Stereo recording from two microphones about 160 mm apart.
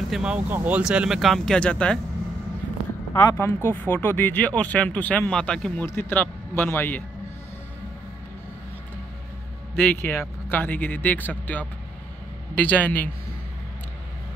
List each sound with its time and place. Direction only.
0.1 s speech: 5° right (ahead or behind)
3.3 s speech: 15° left (ahead or behind)
9.8 s speech: 10° left (ahead or behind)